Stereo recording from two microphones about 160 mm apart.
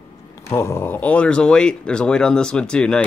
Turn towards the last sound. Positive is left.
turn(degrees=5)  # may be behind; listen again after turning